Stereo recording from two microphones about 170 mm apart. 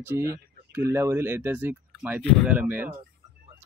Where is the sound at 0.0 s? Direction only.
15° right (ahead or behind).